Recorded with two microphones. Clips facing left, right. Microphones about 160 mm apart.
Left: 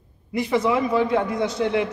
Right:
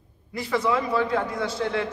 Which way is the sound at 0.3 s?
20° left (ahead or behind).